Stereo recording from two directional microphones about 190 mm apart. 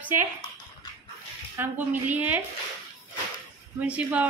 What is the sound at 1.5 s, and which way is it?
Male singing, 10° right (ahead or behind).